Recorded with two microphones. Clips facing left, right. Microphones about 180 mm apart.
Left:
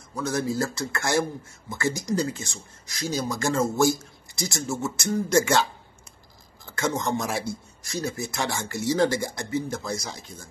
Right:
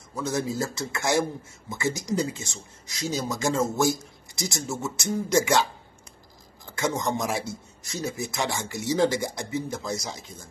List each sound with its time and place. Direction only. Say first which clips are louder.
0.2 s speech: left 1 dB; 20° right (ahead or behind)